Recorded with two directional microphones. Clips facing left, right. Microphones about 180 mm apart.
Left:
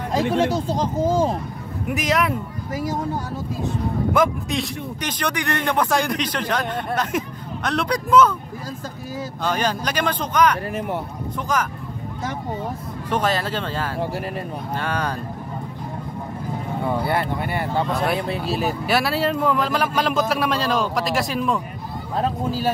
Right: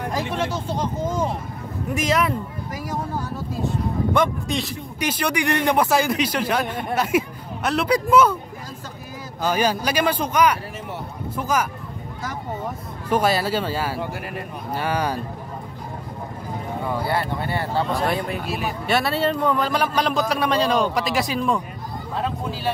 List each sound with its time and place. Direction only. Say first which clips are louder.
0.3 s speech: left 5 dB; 35° left (ahead or behind)
2.0 s a man's voice: even; centre (ahead or behind)
4.1 s speech: left 2 dB; centre (ahead or behind)
9.4 s speech: right 3 dB; 10° right (ahead or behind)
10.7 s speech: left 7 dB; 55° left (ahead or behind)
11.3 s speech: right 1 dB; 10° right (ahead or behind)
13.1 s speech: right 2 dB; 10° right (ahead or behind)
17.1 s speech: left 1 dB; 20° left (ahead or behind)
17.9 s a man's voice: even; centre (ahead or behind)
18.3 s speech: left 3 dB; 35° left (ahead or behind)
18.9 s a man's voice: right 1 dB; centre (ahead or behind)
22.1 s speech: left 4 dB; 40° left (ahead or behind)